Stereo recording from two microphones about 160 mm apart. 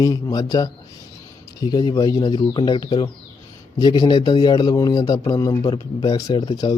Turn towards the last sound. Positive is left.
turn(degrees=25)  # may be behind; listen again after turning